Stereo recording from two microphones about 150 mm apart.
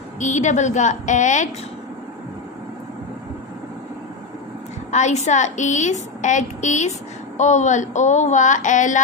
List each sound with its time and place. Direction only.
0.2 s a woman's voice: 55° left (ahead or behind)
4.9 s a woman's voice: 50° left (ahead or behind)